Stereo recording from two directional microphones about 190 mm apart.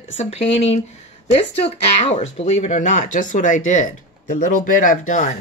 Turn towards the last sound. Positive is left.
turn(degrees=45)  # may be behind; listen again after turning